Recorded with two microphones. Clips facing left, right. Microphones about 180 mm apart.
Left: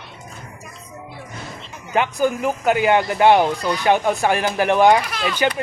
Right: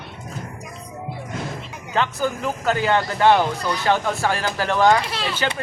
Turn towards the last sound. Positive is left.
turn(degrees=-30)  # may be behind; listen again after turning